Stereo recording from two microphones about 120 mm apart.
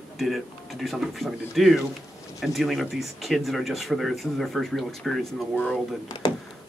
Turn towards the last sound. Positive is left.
turn(degrees=35)  # may be behind; listen again after turning